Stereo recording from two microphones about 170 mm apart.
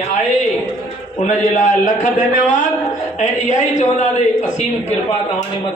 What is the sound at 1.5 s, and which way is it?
Speech, 50° left (ahead or behind).